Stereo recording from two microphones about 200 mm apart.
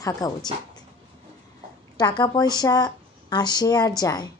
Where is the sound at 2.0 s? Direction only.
20° left (ahead or behind).